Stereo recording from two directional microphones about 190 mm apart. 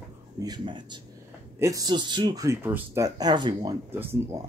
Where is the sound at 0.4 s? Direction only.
25° right (ahead or behind).